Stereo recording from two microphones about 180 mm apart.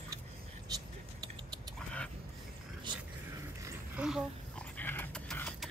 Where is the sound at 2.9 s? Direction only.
25° right (ahead or behind).